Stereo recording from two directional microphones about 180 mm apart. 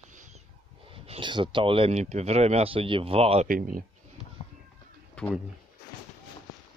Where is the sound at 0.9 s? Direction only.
30° right (ahead or behind).